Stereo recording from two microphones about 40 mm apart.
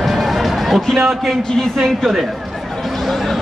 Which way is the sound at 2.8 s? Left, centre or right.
Centre.